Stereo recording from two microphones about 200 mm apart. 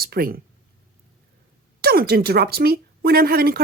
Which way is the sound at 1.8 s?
50° right (ahead or behind).